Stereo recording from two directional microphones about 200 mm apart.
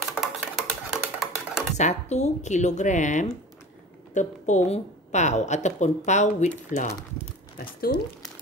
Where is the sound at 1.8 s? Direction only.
35° left (ahead or behind).